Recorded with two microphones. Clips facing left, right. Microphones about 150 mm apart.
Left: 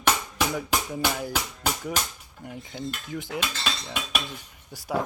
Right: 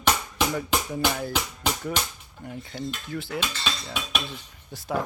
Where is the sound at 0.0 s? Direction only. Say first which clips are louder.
Right 1 dB; 5° left (ahead or behind).